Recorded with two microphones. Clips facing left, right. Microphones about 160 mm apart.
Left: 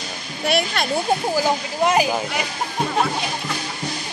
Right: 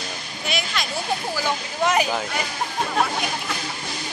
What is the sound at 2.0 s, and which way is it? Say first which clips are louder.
Speech: left 2 dB; 15° left (ahead or behind).